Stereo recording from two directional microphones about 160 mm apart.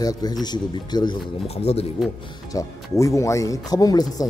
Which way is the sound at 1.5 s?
40° left (ahead or behind).